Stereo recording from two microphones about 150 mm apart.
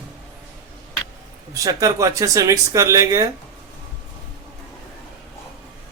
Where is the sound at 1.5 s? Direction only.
20° right (ahead or behind).